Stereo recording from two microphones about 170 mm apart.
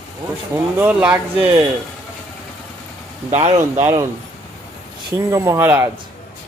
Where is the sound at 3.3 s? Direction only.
40° right (ahead or behind).